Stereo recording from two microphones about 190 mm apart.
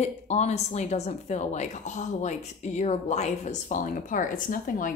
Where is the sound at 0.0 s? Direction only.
35° left (ahead or behind).